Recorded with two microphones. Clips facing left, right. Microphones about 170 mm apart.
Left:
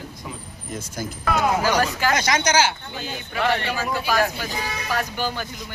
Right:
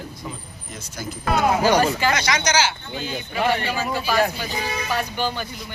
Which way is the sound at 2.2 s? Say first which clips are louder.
Left 1 dB; 50° left (ahead or behind).